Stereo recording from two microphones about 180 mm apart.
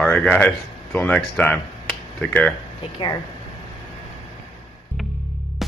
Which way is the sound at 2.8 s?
25° left (ahead or behind).